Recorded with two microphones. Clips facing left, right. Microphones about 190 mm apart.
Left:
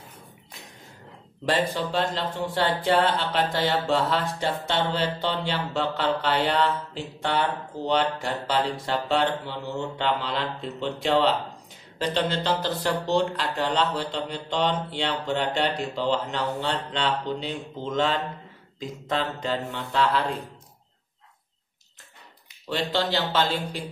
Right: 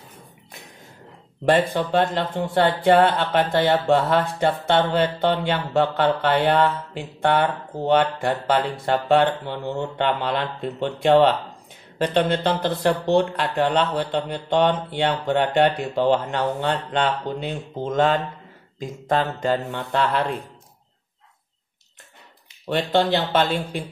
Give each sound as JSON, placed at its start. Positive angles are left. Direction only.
{"t": 1.5, "sound": "speech", "side_deg": -55}
{"t": 22.7, "sound": "speech", "side_deg": -55}